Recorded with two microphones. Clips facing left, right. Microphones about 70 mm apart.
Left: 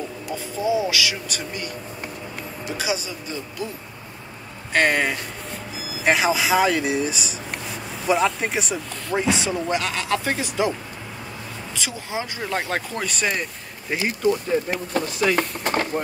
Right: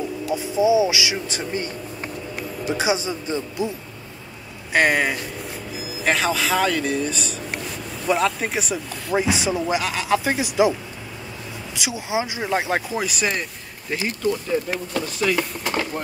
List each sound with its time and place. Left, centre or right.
0.3 s speech: centre
2.8 s speech: right
4.7 s speech: centre
11.7 s speech: centre
13.8 s speech: centre
14.7 s speech: left